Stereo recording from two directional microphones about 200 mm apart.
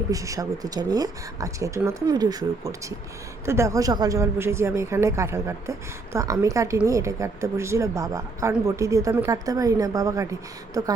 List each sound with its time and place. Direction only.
0.1 s a woman's voice: 15° right (ahead or behind)